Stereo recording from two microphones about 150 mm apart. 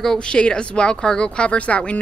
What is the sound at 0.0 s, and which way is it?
Speech, 5° left (ahead or behind).